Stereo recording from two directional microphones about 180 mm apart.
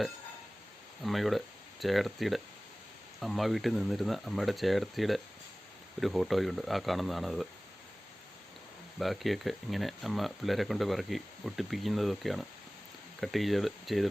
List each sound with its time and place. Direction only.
1.0 s speech: centre (ahead or behind)
9.0 s speech: centre (ahead or behind)